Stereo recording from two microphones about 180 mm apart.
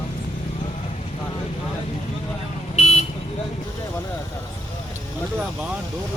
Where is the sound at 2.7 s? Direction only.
40° left (ahead or behind).